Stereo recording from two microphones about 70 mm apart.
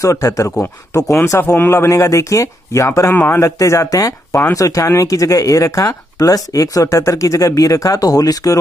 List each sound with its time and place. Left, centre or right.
0.0 s speech: left